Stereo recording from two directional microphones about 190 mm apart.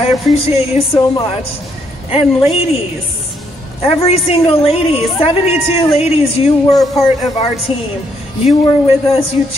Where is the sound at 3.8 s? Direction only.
30° left (ahead or behind).